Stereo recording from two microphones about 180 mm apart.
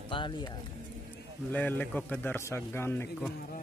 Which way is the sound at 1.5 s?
10° left (ahead or behind).